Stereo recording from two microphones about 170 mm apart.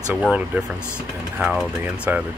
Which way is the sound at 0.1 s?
5° right (ahead or behind).